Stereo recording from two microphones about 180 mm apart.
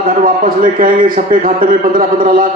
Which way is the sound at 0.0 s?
50° right (ahead or behind).